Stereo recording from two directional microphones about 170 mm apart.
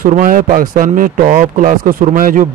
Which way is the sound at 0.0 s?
55° right (ahead or behind).